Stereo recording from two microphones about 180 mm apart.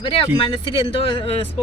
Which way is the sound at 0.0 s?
30° left (ahead or behind).